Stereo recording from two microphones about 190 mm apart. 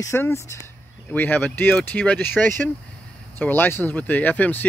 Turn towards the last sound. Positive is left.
turn(degrees=10)  # may be behind; listen again after turning